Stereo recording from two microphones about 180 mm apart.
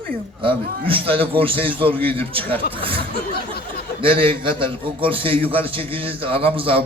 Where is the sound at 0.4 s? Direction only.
30° right (ahead or behind).